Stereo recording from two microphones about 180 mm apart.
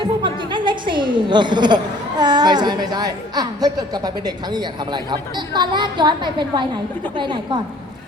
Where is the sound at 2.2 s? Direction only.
25° right (ahead or behind).